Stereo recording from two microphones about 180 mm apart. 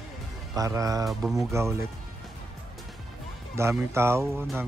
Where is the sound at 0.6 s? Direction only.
20° right (ahead or behind).